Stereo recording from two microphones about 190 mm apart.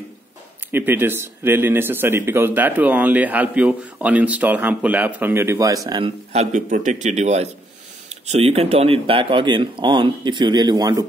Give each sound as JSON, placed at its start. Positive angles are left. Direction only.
{"t": 0.7, "sound": "speech", "side_deg": -10}
{"t": 5.9, "sound": "speech", "side_deg": -25}